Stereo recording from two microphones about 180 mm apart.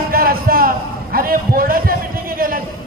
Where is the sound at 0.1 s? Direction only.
55° right (ahead or behind).